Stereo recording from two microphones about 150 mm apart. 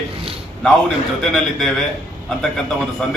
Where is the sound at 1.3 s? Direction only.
Centre (ahead or behind).